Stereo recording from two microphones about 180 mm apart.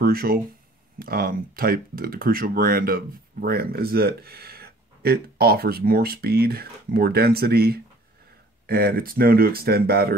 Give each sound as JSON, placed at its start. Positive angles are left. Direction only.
{"t": 0.0, "sound": "speech", "side_deg": -55}